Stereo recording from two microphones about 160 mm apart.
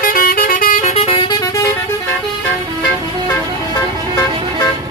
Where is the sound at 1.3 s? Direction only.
25° left (ahead or behind).